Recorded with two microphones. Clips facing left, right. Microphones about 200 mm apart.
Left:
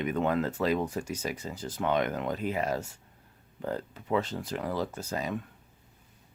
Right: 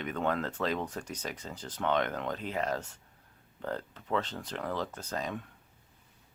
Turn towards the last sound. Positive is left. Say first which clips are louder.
# left 3 dB
turn(degrees=5)  # may be behind; listen again after turning